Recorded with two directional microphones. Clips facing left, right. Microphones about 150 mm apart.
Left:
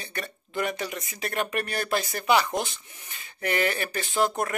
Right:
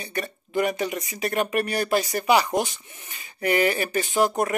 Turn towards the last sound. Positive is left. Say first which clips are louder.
# right 4 dB
turn(degrees=-15)  # may be behind; listen again after turning